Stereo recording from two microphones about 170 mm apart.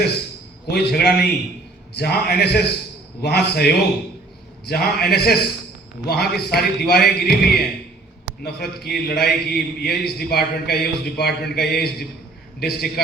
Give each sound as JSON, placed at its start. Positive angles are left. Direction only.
{"t": 0.7, "sound": "a man's voice", "side_deg": 70}
{"t": 8.8, "sound": "a man's voice", "side_deg": 70}